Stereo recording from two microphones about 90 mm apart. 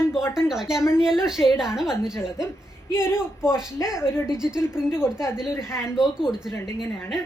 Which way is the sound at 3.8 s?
5° right (ahead or behind).